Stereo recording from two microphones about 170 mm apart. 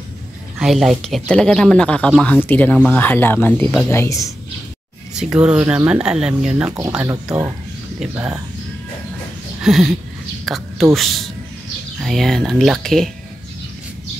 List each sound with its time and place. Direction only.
0.6 s speech: centre (ahead or behind); by 4.3 s 15° left (ahead or behind)
5.1 s speech: 5° right (ahead or behind)
7.1 s speech: 20° right (ahead or behind)
9.6 s a sound: 5° right (ahead or behind)
10.4 s a woman's voice: centre (ahead or behind)